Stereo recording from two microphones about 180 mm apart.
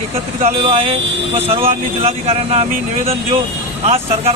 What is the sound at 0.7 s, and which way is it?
Speech, 30° right (ahead or behind).